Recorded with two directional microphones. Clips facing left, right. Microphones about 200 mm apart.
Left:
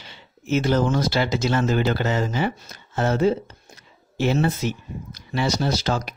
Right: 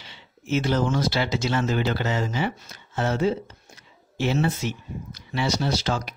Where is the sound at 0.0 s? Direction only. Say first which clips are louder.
Left 3 dB; 45° left (ahead or behind).